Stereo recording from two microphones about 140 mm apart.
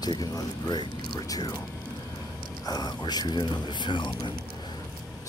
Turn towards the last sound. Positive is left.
turn(degrees=35)  # may be behind; listen again after turning